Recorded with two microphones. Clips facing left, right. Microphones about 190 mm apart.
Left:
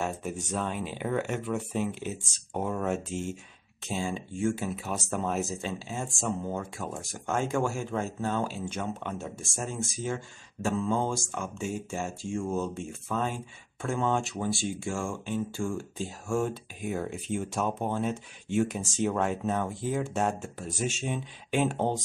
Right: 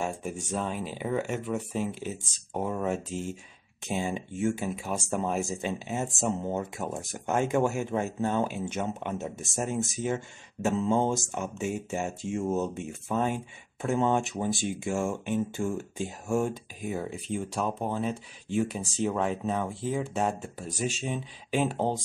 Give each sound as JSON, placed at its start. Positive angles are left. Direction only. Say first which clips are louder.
{"t": 0.0, "sound": "speech", "louder": "even", "side_deg": -10}
{"t": 3.1, "sound": "speech", "louder": "even", "side_deg": -40}
{"t": 3.8, "sound": "speech", "louder": "right 2 dB", "side_deg": -15}